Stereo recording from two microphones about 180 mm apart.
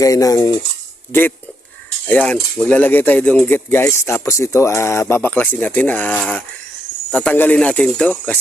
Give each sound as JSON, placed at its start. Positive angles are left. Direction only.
{"t": 0.0, "sound": "cutlery", "side_deg": 20}
{"t": 2.0, "sound": "cutlery", "side_deg": 10}